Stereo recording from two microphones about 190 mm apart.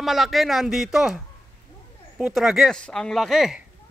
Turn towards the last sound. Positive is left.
turn(degrees=0)  # may be behind; listen again after turning